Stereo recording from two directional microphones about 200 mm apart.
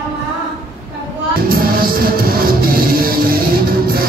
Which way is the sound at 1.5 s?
45° right (ahead or behind).